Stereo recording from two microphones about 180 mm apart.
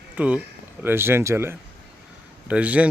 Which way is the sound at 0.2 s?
5° right (ahead or behind).